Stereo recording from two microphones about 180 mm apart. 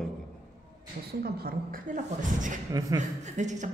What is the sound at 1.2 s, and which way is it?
A woman's voice, 60° right (ahead or behind).